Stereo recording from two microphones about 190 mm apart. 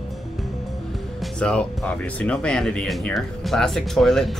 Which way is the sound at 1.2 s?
5° left (ahead or behind).